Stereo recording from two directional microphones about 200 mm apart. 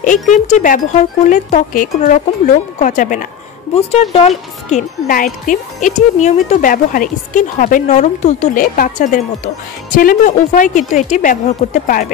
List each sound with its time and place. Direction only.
0.3 s speech: 40° left (ahead or behind)
3.7 s speech: 30° left (ahead or behind)